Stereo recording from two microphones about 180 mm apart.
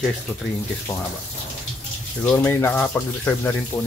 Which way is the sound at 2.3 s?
10° left (ahead or behind).